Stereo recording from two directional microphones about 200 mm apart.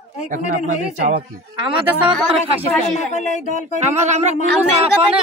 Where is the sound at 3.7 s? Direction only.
35° right (ahead or behind).